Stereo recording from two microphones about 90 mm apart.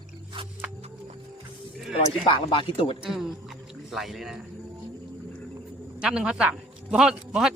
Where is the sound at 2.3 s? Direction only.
75° left (ahead or behind).